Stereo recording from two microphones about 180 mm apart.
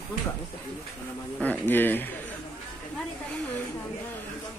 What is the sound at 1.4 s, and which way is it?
Speech, 10° left (ahead or behind).